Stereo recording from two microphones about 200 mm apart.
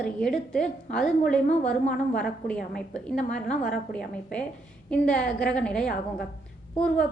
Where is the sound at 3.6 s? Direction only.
45° left (ahead or behind).